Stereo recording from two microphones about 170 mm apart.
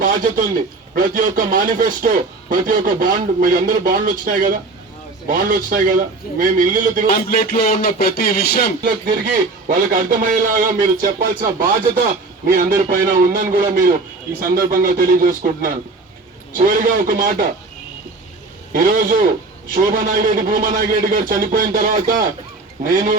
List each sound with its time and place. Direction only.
0.0 s a man's voice: 50° right (ahead or behind)
7.3 s a sound: 65° left (ahead or behind)
8.8 s a man's voice: 50° right (ahead or behind)
18.7 s a man's voice: 55° right (ahead or behind)